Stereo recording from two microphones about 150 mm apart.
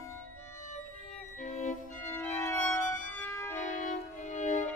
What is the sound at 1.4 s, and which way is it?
Violin, 55° left (ahead or behind).